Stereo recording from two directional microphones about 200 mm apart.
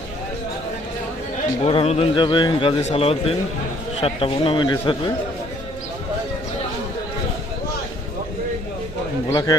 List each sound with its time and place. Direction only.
1.6 s a man's voice: 30° left (ahead or behind)
9.3 s a man's voice: 20° left (ahead or behind)